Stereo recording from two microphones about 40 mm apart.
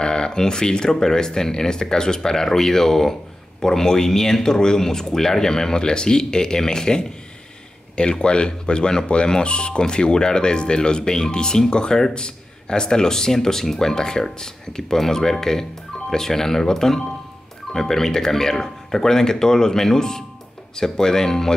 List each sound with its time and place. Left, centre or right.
0.0 s speech: left